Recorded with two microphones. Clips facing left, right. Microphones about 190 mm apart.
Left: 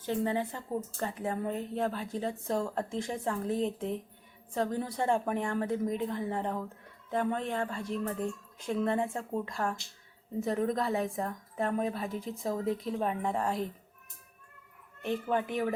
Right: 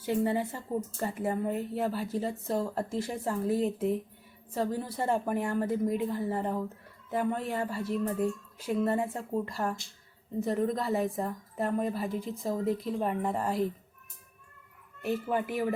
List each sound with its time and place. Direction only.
0.0 s a woman's voice: 10° right (ahead or behind)
15.0 s a woman's voice: 5° right (ahead or behind)